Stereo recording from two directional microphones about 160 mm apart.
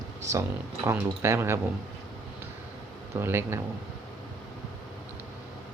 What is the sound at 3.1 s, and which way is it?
Speech, 15° right (ahead or behind).